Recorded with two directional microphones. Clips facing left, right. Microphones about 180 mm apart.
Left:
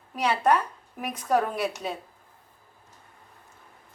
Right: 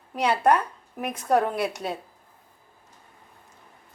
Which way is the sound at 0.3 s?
10° right (ahead or behind).